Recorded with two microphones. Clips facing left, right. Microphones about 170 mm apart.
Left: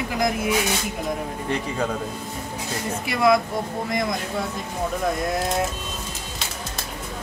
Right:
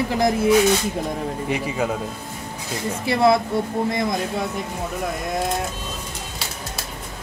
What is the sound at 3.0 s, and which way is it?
Speech, 30° right (ahead or behind).